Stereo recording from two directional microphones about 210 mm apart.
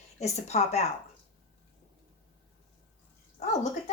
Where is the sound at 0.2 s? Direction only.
30° left (ahead or behind).